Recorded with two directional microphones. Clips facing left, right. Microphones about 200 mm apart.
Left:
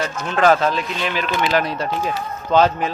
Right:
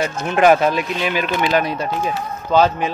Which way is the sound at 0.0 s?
15° right (ahead or behind).